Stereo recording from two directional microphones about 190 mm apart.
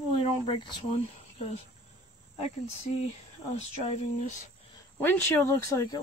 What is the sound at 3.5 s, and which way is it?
Speech, 35° left (ahead or behind).